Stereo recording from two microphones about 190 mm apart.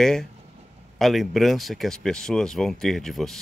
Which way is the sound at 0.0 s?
Centre (ahead or behind).